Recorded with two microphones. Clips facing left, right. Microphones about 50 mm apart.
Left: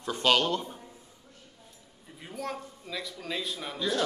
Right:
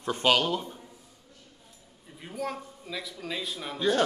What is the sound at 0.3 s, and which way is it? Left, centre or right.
Speech, centre.